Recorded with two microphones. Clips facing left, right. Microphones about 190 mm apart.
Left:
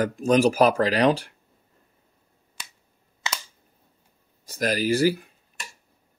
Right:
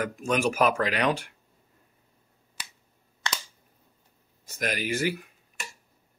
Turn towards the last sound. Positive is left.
turn(degrees=35)  # may be behind; listen again after turning